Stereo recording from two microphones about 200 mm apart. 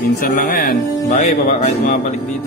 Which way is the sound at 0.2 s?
45° left (ahead or behind).